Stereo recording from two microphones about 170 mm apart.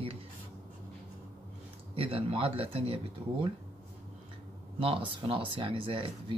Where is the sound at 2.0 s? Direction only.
35° right (ahead or behind).